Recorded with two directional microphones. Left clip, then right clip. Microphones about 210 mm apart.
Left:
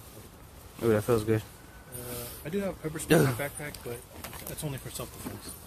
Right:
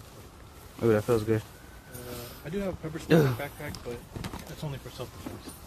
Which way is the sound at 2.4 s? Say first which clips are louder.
Left 1 dB; 50° left (ahead or behind).